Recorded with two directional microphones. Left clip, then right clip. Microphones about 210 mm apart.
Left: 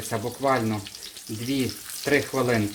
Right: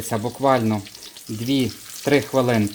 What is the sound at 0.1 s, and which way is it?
Speech, 40° right (ahead or behind).